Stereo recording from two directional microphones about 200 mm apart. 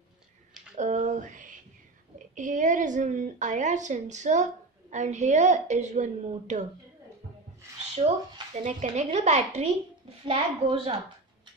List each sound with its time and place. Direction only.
0.7 s a sound: 40° right (ahead or behind)
2.3 s a child's voice: 40° right (ahead or behind)
8.0 s a child's voice: 30° right (ahead or behind)